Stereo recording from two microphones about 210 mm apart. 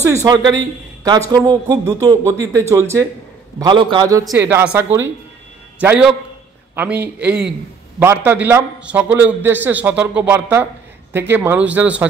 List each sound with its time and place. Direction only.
0.0 s a man's voice: 15° right (ahead or behind)